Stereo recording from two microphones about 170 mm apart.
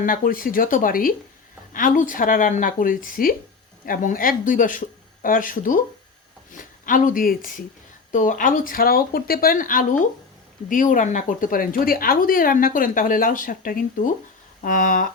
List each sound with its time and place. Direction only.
0.0 s a woman's voice: 55° left (ahead or behind)